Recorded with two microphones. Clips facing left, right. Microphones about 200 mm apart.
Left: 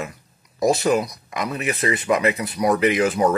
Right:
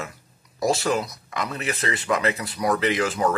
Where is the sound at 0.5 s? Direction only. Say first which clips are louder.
Left 4 dB; 20° left (ahead or behind).